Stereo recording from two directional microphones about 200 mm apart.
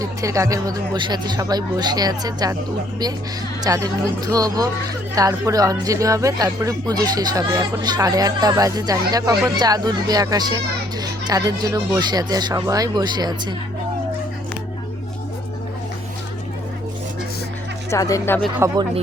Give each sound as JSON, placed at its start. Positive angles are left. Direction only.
{"t": 0.0, "sound": "speech", "side_deg": -15}
{"t": 3.6, "sound": "speech", "side_deg": -15}
{"t": 17.9, "sound": "speech", "side_deg": 15}